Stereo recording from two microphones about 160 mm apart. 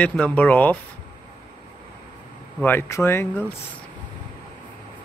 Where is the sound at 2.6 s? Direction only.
15° left (ahead or behind).